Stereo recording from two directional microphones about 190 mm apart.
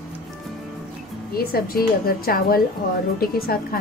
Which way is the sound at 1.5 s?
50° left (ahead or behind).